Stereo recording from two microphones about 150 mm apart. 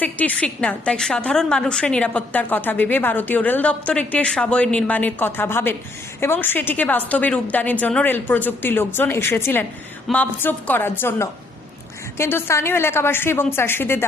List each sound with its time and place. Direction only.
0.0 s a woman's voice: 10° left (ahead or behind)